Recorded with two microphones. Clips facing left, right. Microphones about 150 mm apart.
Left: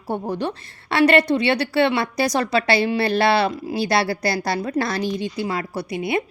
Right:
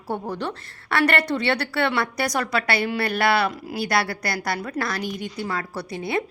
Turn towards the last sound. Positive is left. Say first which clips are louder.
# left 3 dB
turn(degrees=20)  # may be behind; listen again after turning